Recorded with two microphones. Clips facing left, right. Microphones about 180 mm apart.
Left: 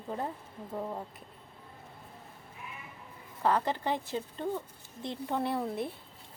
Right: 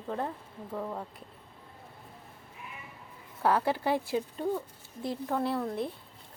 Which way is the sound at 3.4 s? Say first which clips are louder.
Right 2 dB; 10° right (ahead or behind).